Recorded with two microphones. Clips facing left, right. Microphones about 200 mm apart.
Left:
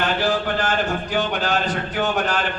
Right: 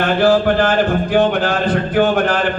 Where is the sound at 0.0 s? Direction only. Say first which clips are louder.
Right 8 dB; 55° right (ahead or behind).